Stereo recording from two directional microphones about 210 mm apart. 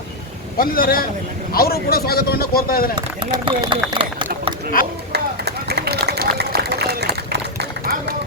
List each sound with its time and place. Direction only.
0.6 s speech: 45° left (ahead or behind)
2.9 s speech: 20° right (ahead or behind)
5.1 s run: 50° right (ahead or behind)